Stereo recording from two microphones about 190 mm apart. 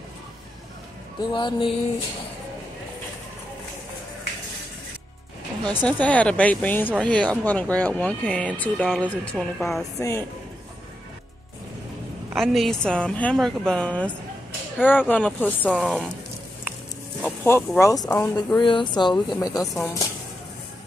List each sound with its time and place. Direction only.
1.3 s speech: 25° left (ahead or behind)
5.7 s speech: 10° left (ahead or behind)
9.9 s speech: 15° left (ahead or behind)
12.4 s a woman's voice: centre (ahead or behind)
17.2 s speech: 10° left (ahead or behind)
18.6 s speech: 25° left (ahead or behind)